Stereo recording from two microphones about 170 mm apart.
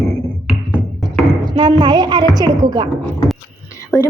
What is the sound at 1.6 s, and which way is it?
Speech, 25° right (ahead or behind).